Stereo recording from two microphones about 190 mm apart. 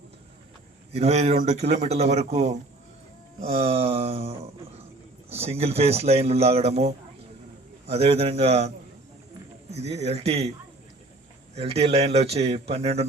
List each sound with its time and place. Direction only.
0.9 s a man's voice: 35° right (ahead or behind)
9.7 s a man's voice: 35° right (ahead or behind)
11.5 s a man's voice: 35° right (ahead or behind)